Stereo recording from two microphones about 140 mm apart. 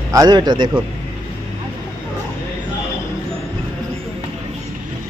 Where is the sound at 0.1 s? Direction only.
30° right (ahead or behind).